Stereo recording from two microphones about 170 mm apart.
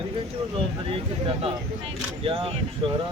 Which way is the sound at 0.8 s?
35° right (ahead or behind).